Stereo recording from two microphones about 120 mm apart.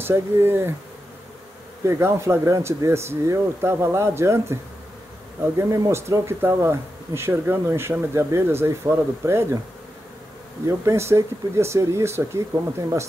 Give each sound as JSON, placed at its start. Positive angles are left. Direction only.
{"t": 0.0, "sound": "speech", "side_deg": -20}
{"t": 1.9, "sound": "speech", "side_deg": -20}
{"t": 10.7, "sound": "speech", "side_deg": -25}